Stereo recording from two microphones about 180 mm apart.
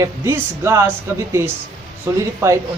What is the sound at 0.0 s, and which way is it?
Speech, 15° right (ahead or behind).